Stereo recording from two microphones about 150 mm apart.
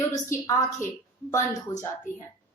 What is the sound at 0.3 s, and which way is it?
Speech, 25° left (ahead or behind).